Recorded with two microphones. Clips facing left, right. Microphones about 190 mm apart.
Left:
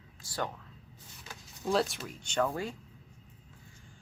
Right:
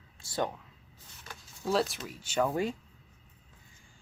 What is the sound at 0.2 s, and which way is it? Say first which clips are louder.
Speech: right 4 dB; 25° right (ahead or behind).